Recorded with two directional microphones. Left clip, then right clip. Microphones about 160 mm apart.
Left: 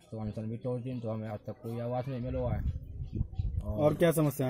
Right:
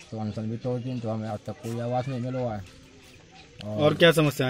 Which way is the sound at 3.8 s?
50° left (ahead or behind).